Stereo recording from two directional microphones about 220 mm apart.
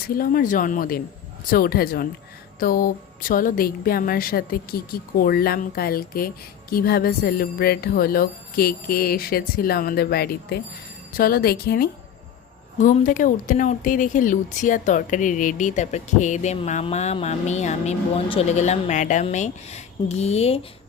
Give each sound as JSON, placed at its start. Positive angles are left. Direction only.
{"t": 0.1, "sound": "a woman's voice", "side_deg": 40}